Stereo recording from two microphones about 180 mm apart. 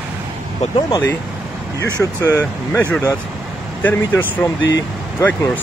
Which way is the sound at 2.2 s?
15° left (ahead or behind).